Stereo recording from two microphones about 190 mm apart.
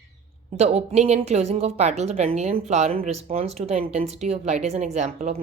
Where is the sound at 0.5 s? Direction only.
35° right (ahead or behind).